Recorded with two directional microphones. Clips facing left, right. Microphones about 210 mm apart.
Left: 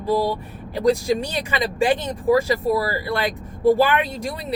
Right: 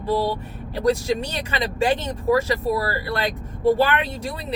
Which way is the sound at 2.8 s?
10° left (ahead or behind).